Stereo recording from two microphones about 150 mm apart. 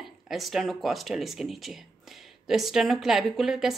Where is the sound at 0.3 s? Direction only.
Centre (ahead or behind).